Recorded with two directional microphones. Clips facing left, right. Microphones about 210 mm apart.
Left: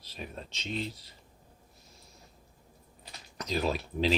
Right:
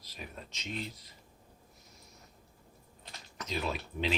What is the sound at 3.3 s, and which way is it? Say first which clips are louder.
Speech: left 5 dB; 35° left (ahead or behind).